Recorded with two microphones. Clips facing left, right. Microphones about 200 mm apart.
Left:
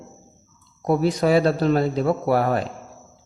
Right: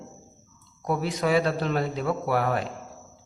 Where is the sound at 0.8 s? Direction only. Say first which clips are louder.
Left 7 dB; 35° left (ahead or behind).